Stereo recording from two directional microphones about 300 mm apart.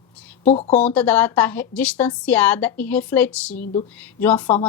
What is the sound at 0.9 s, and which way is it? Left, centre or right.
A woman's voice, centre.